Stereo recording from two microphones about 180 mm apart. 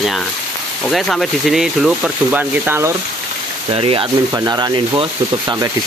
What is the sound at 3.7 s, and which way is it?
Speech, 30° right (ahead or behind).